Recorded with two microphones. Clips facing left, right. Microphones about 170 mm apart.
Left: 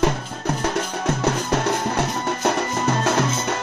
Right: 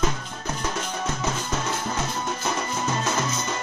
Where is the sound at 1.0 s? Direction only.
65° left (ahead or behind).